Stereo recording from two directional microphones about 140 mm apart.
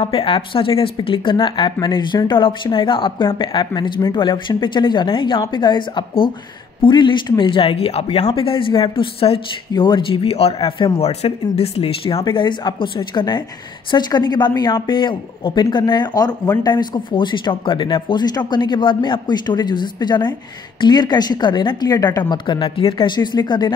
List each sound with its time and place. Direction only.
0.0 s speech: 40° left (ahead or behind)